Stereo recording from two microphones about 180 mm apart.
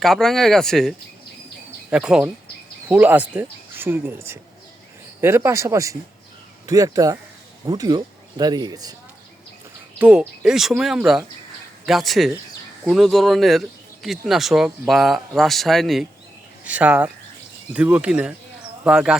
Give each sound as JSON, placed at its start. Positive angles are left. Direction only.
{"t": 0.0, "sound": "speech", "side_deg": 0}
{"t": 10.0, "sound": "speech", "side_deg": -5}